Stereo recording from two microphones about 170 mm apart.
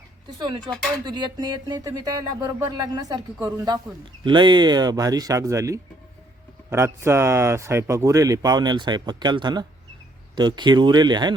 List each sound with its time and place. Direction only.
0.3 s speech: 25° right (ahead or behind)